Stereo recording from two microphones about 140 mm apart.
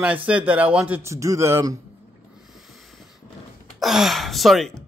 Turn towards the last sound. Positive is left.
turn(degrees=0)  # may be behind; listen again after turning